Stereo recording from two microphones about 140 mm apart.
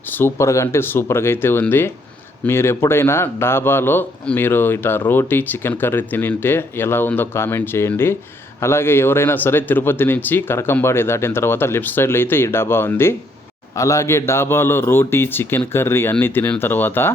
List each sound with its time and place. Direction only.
0.1 s a man's voice: 15° left (ahead or behind)